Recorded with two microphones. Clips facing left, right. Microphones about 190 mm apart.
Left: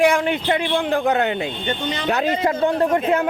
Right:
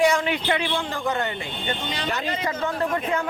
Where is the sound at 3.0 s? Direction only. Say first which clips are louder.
Left 6 dB; 60° left (ahead or behind).